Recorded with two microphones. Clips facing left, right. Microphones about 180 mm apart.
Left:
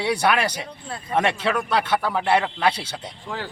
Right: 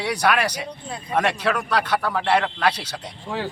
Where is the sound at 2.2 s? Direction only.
10° left (ahead or behind).